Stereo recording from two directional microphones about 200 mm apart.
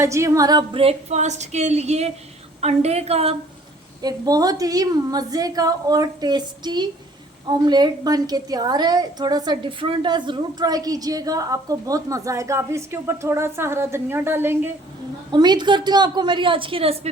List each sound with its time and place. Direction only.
0.0 s a woman's voice: 15° right (ahead or behind); by 3.3 s 30° right (ahead or behind)
4.0 s a woman's voice: 20° right (ahead or behind)
15.3 s a woman's voice: 20° right (ahead or behind)